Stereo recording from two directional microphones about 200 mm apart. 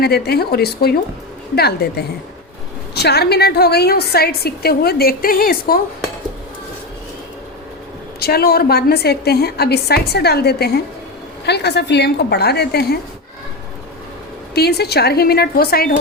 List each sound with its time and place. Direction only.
0.0 s a woman's voice: 50° left (ahead or behind)
8.2 s a woman's voice: 50° left (ahead or behind)
14.5 s a woman's voice: 55° left (ahead or behind)